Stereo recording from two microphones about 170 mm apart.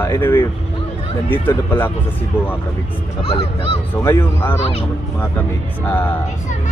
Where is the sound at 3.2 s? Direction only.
35° left (ahead or behind).